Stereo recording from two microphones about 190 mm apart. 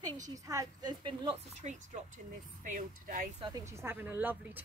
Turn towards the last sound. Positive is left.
turn(degrees=-10)  # may be behind; listen again after turning